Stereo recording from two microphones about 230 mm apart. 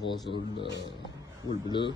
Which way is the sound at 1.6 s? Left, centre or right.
Centre.